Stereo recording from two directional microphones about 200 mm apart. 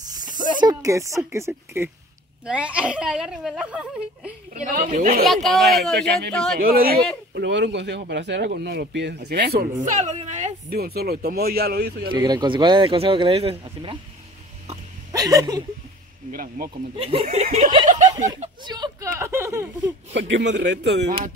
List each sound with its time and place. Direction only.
0.4 s speech: 20° right (ahead or behind); by 4.3 s 5° right (ahead or behind)
4.6 s speech: 40° right (ahead or behind)
5.3 s speech: centre (ahead or behind)
6.6 s speech: 45° right (ahead or behind)
7.3 s speech: 60° right (ahead or behind)
9.8 s speech: 35° right (ahead or behind)
10.7 s speech: 50° right (ahead or behind)
12.2 s speech: 20° right (ahead or behind)
15.1 s speech: 20° right (ahead or behind)
16.3 s speech: 45° right (ahead or behind)
16.9 s speech: 30° right (ahead or behind)
18.0 s snicker: 15° right (ahead or behind)
18.6 s speech: 20° right (ahead or behind)
20.2 s speech: 60° right (ahead or behind)